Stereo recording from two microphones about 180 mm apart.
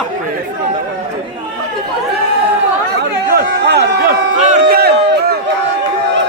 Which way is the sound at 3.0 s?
65° right (ahead or behind).